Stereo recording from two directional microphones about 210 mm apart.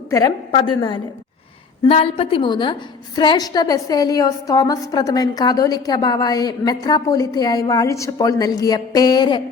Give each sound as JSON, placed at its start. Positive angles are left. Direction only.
{"t": 0.1, "sound": "a woman's voice", "side_deg": 15}